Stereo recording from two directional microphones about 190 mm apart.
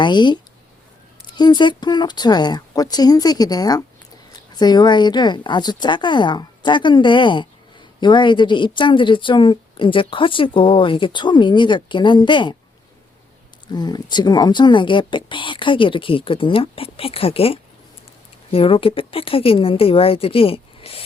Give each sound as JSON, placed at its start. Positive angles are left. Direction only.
{"t": 0.0, "sound": "a woman's voice", "side_deg": 25}
{"t": 1.4, "sound": "a woman's voice", "side_deg": 25}
{"t": 13.7, "sound": "a woman's voice", "side_deg": 20}